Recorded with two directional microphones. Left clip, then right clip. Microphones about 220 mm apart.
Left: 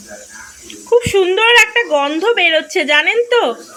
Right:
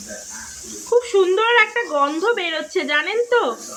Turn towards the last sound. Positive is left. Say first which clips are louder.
# left 6 dB
turn(degrees=15)  # may be behind; listen again after turning